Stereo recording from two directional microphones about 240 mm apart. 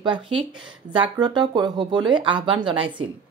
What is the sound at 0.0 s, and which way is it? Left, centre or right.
Speech, centre.